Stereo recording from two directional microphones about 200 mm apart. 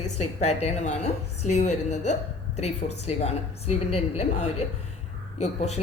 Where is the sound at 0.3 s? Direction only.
35° left (ahead or behind).